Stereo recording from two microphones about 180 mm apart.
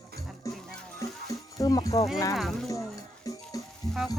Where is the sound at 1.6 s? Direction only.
20° left (ahead or behind).